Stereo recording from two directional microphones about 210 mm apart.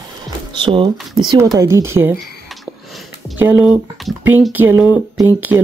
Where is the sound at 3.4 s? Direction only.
10° right (ahead or behind).